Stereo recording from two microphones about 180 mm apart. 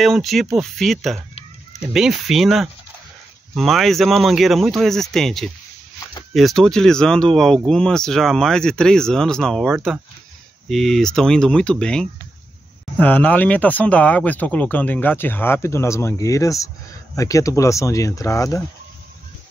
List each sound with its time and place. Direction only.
0.0 s speech: centre (ahead or behind); by 18.6 s 15° left (ahead or behind)